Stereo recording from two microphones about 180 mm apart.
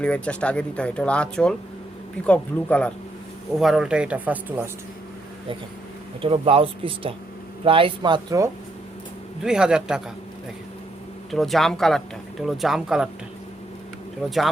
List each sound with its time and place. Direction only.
0.0 s speech: 5° left (ahead or behind); by 4.7 s 10° right (ahead or behind)
6.2 s speech: 30° right (ahead or behind)
9.4 s speech: 5° right (ahead or behind)
11.3 s speech: centre (ahead or behind)
14.3 s speech: centre (ahead or behind)